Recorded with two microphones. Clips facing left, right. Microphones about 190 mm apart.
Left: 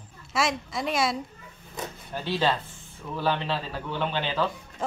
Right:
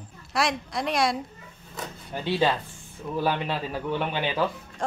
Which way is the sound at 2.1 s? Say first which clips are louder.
Right 2 dB; 15° right (ahead or behind).